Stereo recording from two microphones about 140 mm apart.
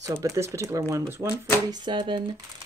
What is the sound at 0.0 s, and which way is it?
Speech, 20° right (ahead or behind).